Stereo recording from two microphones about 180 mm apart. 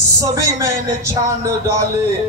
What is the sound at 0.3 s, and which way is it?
A man's voice, 15° right (ahead or behind).